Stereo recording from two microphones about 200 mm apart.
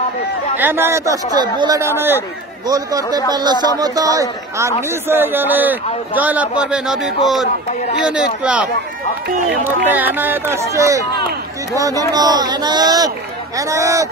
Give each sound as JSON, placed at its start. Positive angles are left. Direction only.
{"t": 0.6, "sound": "a man's voice", "side_deg": -10}
{"t": 9.9, "sound": "a man's voice", "side_deg": -10}